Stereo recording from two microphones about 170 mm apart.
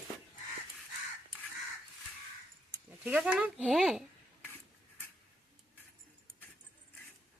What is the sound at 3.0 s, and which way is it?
Speech, 5° right (ahead or behind).